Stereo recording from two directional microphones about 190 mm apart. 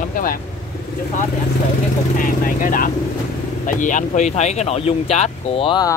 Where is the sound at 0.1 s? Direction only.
50° left (ahead or behind).